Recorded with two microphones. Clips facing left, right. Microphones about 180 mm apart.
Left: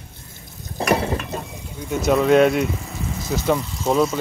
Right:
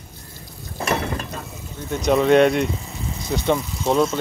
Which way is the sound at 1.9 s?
5° left (ahead or behind).